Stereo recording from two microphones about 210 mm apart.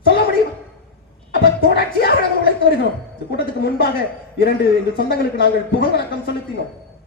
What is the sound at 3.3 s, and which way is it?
A man's voice, 50° left (ahead or behind).